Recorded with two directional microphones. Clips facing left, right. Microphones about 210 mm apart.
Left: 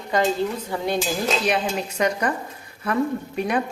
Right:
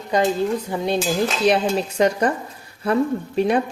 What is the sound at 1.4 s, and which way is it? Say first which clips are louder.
Speech: right 5 dB; 30° right (ahead or behind).